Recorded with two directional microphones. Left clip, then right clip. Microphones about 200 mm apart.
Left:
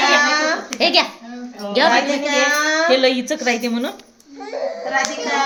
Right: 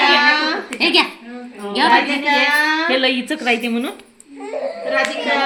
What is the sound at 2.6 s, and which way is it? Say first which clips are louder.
Speech: left 1 dB; 30° left (ahead or behind).